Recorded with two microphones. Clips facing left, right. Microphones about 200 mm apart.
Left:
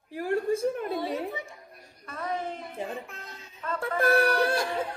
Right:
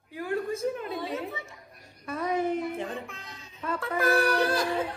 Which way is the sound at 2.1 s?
15° right (ahead or behind).